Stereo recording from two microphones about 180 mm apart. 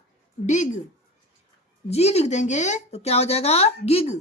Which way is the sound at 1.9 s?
35° left (ahead or behind).